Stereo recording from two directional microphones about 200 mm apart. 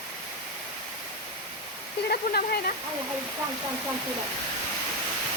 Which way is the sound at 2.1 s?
50° left (ahead or behind).